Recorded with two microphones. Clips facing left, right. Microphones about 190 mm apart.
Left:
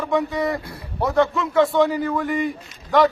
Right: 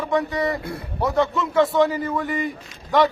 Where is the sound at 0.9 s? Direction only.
Centre (ahead or behind).